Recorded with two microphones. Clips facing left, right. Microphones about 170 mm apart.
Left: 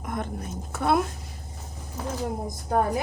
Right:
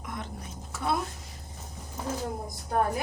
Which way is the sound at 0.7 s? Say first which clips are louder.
Left 6 dB; 60° left (ahead or behind).